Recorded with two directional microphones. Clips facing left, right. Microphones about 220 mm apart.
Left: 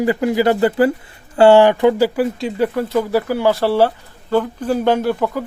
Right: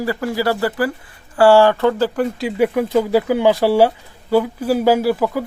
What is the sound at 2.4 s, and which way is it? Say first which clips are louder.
Speech: right 2 dB; 5° right (ahead or behind).